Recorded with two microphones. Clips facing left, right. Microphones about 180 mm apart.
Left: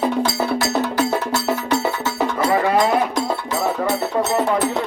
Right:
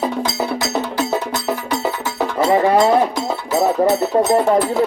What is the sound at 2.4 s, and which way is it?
Livestock, 25° right (ahead or behind).